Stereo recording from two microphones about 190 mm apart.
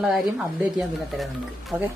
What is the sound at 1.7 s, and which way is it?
Speech, 5° right (ahead or behind).